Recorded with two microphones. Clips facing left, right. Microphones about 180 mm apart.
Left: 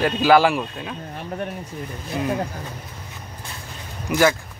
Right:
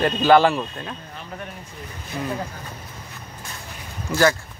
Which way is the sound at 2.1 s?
20° left (ahead or behind).